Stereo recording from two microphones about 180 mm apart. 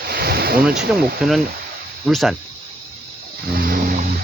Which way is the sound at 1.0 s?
Centre (ahead or behind).